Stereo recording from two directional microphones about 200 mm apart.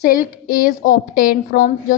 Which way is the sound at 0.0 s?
45° left (ahead or behind).